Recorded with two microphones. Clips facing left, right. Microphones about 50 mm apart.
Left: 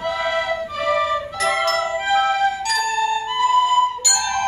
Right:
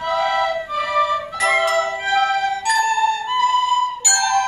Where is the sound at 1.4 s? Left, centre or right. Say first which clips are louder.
Right 3 dB; centre.